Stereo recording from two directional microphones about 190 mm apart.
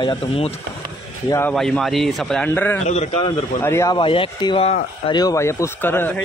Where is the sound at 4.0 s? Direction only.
25° left (ahead or behind).